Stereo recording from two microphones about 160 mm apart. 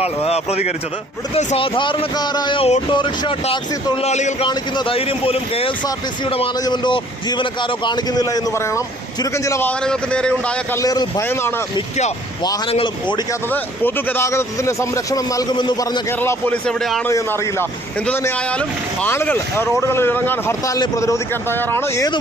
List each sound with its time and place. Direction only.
0.0 s a man's voice: 40° left (ahead or behind)
4.5 s a man's voice: 30° left (ahead or behind); by 10.8 s 5° left (ahead or behind)
10.8 s a man's voice: 20° left (ahead or behind)
12.7 s a man's voice: 30° left (ahead or behind)
13.5 s a man's voice: 15° left (ahead or behind); by 16.0 s 30° left (ahead or behind)
16.2 s speech: 10° left (ahead or behind)
17.1 s speech: 15° left (ahead or behind)